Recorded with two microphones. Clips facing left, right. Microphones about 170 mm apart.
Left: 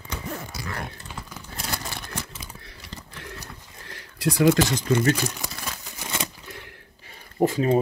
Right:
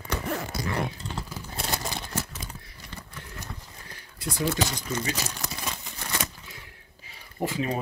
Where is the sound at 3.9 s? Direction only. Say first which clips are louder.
Left 10 dB; 90° left.